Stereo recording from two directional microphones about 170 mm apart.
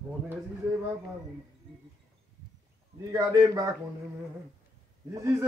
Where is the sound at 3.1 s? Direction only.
20° right (ahead or behind).